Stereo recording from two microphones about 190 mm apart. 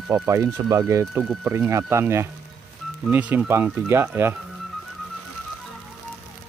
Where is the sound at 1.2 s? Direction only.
Centre (ahead or behind).